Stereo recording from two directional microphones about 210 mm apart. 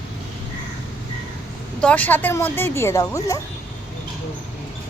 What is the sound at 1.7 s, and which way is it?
A woman's voice, 5° left (ahead or behind).